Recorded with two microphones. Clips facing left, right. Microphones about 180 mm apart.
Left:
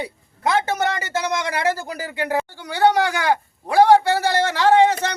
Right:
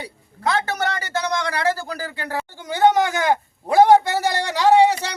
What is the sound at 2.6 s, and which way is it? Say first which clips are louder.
A man's voice: right 1 dB; 20° right (ahead or behind).